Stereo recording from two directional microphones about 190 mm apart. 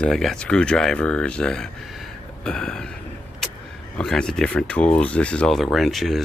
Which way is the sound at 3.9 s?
5° left (ahead or behind).